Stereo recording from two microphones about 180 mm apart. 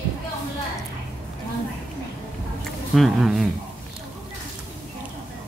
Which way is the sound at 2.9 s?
Centre (ahead or behind).